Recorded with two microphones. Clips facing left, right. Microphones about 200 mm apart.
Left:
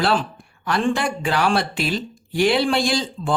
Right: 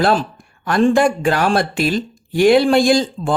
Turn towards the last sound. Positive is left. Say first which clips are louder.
# right 7 dB
turn(degrees=-45)  # may be behind; listen again after turning